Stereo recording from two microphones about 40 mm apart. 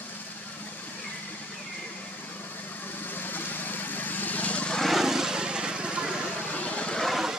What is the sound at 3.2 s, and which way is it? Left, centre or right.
Vehicle, left.